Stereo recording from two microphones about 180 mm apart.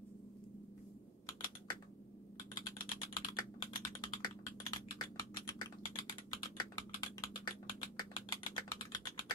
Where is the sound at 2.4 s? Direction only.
25° left (ahead or behind).